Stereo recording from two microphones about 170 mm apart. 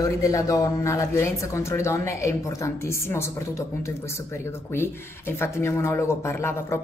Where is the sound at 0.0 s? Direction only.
20° left (ahead or behind).